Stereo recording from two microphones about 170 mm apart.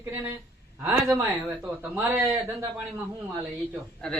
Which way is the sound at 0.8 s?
15° right (ahead or behind).